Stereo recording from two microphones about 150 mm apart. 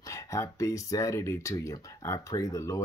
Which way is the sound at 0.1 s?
20° left (ahead or behind).